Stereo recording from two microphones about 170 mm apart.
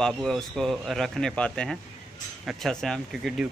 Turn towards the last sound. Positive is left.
turn(degrees=0)  # may be behind; listen again after turning